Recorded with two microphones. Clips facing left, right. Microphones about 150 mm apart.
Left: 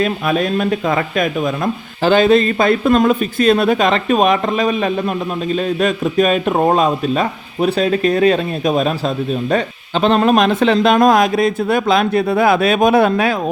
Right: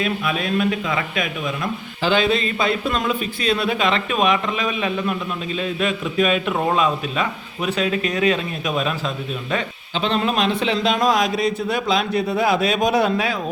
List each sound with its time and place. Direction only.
0.0 s a man's voice: 45° left (ahead or behind)